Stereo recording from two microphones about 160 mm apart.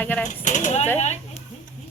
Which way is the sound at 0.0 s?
10° left (ahead or behind).